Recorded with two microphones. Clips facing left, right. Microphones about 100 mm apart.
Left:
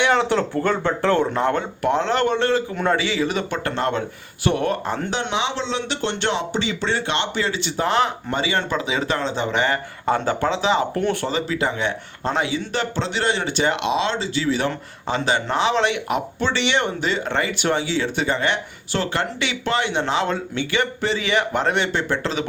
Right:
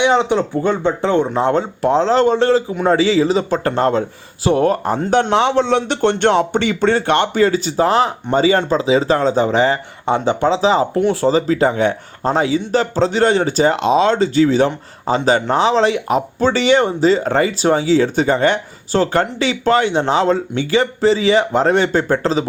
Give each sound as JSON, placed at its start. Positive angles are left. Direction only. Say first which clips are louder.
{"t": 0.0, "sound": "speech", "louder": "right 4 dB", "side_deg": -20}
{"t": 5.1, "sound": "speech", "louder": "right 13 dB", "side_deg": -55}
{"t": 10.9, "sound": "speech", "louder": "right 7 dB", "side_deg": -20}